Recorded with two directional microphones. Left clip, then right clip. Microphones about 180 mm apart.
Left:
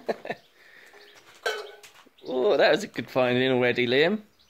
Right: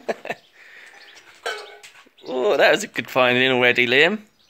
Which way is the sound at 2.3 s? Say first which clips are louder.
Right 4 dB; 5° right (ahead or behind).